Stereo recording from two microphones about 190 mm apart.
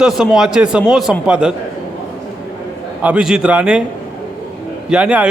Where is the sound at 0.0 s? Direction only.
Centre (ahead or behind).